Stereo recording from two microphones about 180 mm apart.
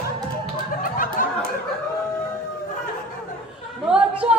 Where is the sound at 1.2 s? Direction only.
50° left (ahead or behind).